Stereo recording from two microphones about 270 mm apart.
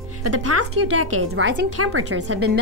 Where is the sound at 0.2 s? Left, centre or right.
Right.